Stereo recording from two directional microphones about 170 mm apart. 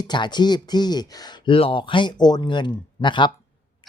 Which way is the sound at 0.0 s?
25° left (ahead or behind).